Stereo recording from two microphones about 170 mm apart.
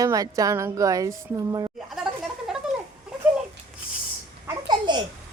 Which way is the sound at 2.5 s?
Centre (ahead or behind).